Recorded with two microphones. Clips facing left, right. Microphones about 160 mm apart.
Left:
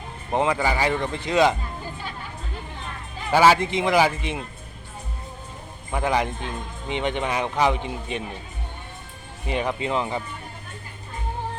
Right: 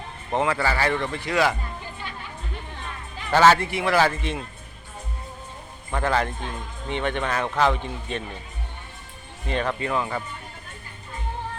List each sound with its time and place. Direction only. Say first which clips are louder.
0.3 s speech: left 1 dB; 15° left (ahead or behind)
3.3 s speech: even; 10° left (ahead or behind)
5.9 s speech: left 1 dB; 15° left (ahead or behind)
9.5 s speech: left 1 dB; 15° left (ahead or behind)